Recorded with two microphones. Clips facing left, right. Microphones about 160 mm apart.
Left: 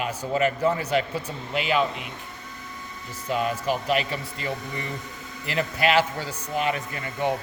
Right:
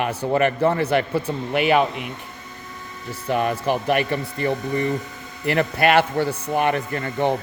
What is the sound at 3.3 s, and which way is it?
Speech, 60° right (ahead or behind).